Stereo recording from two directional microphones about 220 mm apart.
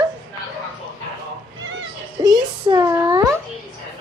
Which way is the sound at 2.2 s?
20° right (ahead or behind).